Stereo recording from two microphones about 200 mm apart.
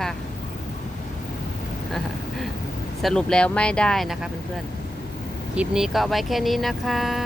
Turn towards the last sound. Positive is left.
turn(degrees=0)  # may be behind; listen again after turning